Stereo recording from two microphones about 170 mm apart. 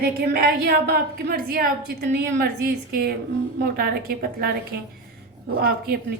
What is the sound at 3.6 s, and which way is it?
Speech, 65° right (ahead or behind).